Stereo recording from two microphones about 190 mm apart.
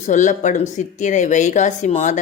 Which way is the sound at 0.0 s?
40° left (ahead or behind).